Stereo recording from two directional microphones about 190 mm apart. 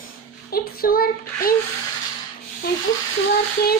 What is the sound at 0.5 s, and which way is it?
Speech, 50° left (ahead or behind).